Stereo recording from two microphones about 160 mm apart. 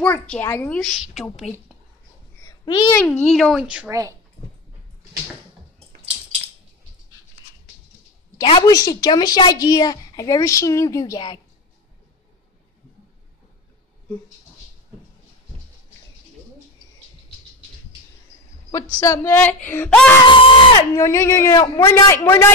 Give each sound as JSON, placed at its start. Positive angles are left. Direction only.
{"t": 0.3, "sound": "speech", "side_deg": 15}
{"t": 0.7, "sound": "a woman's voice", "side_deg": 0}
{"t": 2.4, "sound": "babbling", "side_deg": 25}
{"t": 3.0, "sound": "a woman's voice", "side_deg": 10}
{"t": 3.9, "sound": "speech", "side_deg": -20}
{"t": 8.4, "sound": "speech", "side_deg": 25}
{"t": 18.9, "sound": "speech", "side_deg": 20}
{"t": 20.2, "sound": "speech", "side_deg": 35}
{"t": 20.9, "sound": "speech", "side_deg": 20}